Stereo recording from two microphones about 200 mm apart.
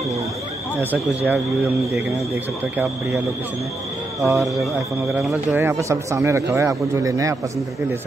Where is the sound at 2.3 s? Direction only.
10° right (ahead or behind).